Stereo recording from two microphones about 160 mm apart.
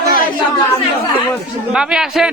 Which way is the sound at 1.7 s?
5° right (ahead or behind).